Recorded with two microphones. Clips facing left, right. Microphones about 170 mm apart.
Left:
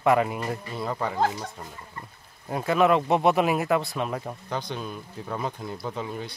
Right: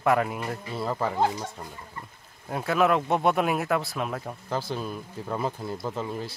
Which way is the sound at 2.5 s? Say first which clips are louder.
Left 2 dB; centre (ahead or behind).